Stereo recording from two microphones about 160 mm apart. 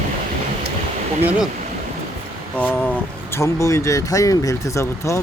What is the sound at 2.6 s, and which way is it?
Speech, 10° left (ahead or behind).